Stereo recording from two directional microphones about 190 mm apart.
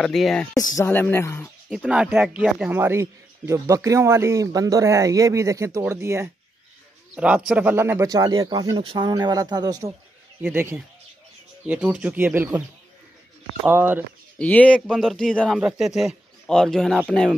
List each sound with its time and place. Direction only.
0.0 s speech: centre (ahead or behind)
0.6 s speech: 15° left (ahead or behind)
1.7 s speech: 5° right (ahead or behind)
13.7 s speech: 10° right (ahead or behind)
14.4 s speech: 5° left (ahead or behind)